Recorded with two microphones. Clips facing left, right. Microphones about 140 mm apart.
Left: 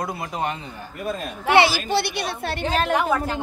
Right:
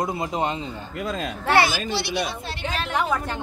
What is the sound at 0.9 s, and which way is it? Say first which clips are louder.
Speech: even; 90° right.